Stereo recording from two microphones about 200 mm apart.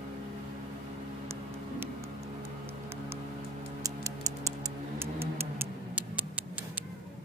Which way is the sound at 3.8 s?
15° right (ahead or behind).